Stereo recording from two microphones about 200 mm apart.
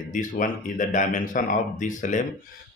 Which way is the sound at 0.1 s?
40° left (ahead or behind).